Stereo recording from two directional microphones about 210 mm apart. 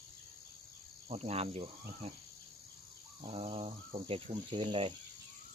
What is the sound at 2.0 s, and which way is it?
Cricket, 30° right (ahead or behind).